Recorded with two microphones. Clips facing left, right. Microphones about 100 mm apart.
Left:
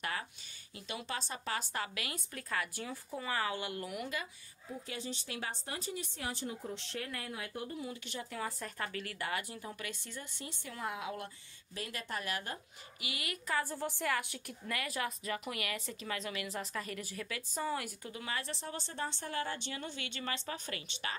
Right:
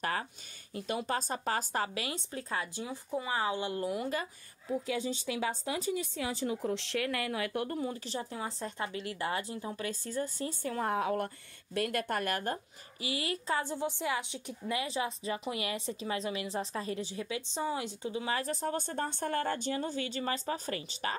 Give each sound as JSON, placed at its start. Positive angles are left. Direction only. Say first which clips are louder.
{"t": 0.0, "sound": "a woman's voice", "louder": "right 5 dB", "side_deg": -40}
{"t": 6.4, "sound": "speech", "louder": "right 8 dB", "side_deg": -90}
{"t": 7.7, "sound": "a woman's voice", "louder": "right 6 dB", "side_deg": -40}
{"t": 13.0, "sound": "a woman's voice", "louder": "right 7 dB", "side_deg": -30}
{"t": 18.3, "sound": "a woman's voice", "louder": "right 6 dB", "side_deg": -40}